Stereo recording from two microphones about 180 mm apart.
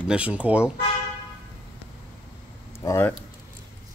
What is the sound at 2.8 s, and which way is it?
Speech, 15° left (ahead or behind).